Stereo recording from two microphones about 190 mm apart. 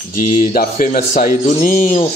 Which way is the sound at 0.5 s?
45° left (ahead or behind).